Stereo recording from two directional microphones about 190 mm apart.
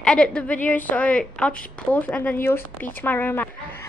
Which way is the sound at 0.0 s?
5° left (ahead or behind).